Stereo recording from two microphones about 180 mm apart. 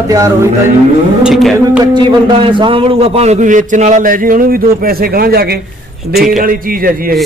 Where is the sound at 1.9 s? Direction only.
25° right (ahead or behind); by 7.1 s 55° right (ahead or behind).